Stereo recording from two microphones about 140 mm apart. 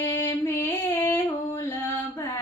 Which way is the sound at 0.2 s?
20° left (ahead or behind).